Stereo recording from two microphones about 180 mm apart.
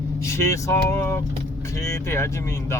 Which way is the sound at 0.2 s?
15° left (ahead or behind).